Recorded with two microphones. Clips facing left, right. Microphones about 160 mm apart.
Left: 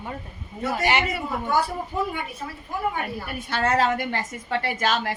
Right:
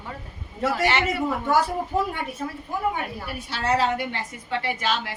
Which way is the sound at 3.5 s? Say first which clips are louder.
Left 1 dB; 50° left (ahead or behind).